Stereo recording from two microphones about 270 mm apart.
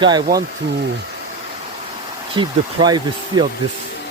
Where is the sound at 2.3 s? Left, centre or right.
Centre.